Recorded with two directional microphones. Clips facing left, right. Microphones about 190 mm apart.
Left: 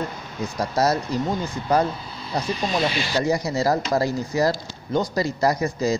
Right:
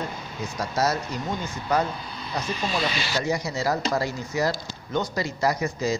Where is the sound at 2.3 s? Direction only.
35° left (ahead or behind).